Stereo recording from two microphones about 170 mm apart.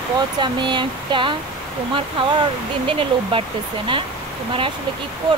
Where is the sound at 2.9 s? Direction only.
30° right (ahead or behind).